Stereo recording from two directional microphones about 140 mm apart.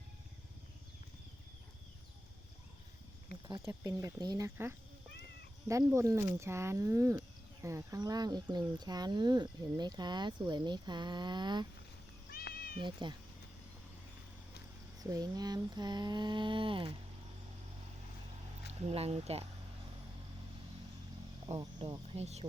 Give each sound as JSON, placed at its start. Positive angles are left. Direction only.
{"t": 3.7, "sound": "speech", "side_deg": -25}
{"t": 12.3, "sound": "cat", "side_deg": 90}
{"t": 12.8, "sound": "a sound", "side_deg": -35}
{"t": 14.9, "sound": "a sound", "side_deg": -25}
{"t": 18.7, "sound": "speech", "side_deg": -50}
{"t": 21.8, "sound": "speech", "side_deg": -40}